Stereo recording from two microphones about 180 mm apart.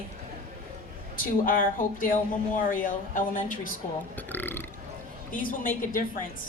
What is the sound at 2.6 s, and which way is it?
A woman's voice, 50° left (ahead or behind).